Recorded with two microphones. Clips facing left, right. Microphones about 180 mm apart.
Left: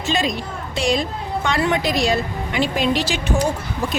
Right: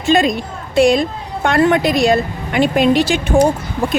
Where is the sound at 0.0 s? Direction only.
55° right (ahead or behind).